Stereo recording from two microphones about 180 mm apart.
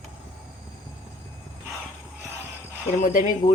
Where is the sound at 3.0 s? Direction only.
45° left (ahead or behind).